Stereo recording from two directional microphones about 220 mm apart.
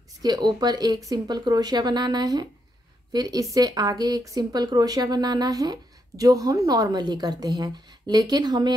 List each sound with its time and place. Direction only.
0.2 s speech: 20° right (ahead or behind)